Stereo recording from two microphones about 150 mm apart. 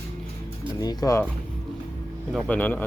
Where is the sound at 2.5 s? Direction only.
10° left (ahead or behind).